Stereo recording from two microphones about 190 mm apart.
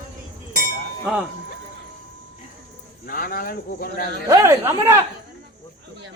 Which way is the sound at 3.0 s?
50° left (ahead or behind).